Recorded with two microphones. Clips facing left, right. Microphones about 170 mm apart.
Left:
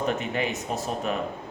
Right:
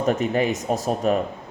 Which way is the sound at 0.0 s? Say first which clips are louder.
Right 6 dB; 40° right (ahead or behind).